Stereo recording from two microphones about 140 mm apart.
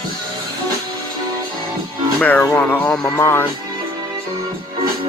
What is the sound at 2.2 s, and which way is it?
Speech, 10° left (ahead or behind).